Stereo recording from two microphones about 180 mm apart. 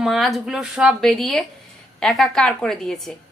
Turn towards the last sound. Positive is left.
turn(degrees=0)  # may be behind; listen again after turning